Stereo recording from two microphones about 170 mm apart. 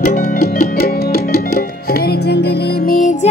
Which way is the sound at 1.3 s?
65° left (ahead or behind).